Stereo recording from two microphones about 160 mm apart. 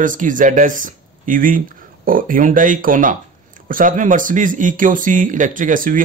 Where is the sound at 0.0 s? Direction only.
55° right (ahead or behind).